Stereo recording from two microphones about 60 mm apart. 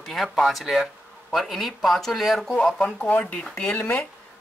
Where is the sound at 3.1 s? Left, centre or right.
Left.